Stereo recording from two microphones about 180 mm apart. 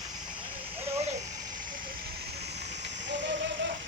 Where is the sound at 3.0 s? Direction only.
80° right.